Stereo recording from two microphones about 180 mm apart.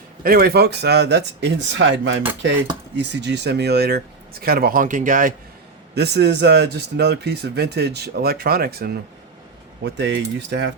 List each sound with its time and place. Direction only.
0.2 s speech: 55° right (ahead or behind); by 2.1 s 90° right
2.9 s speech: 75° right (ahead or behind); by 5.3 s 45° right (ahead or behind)
5.9 s speech: 65° right (ahead or behind)
9.8 s speech: 75° right (ahead or behind)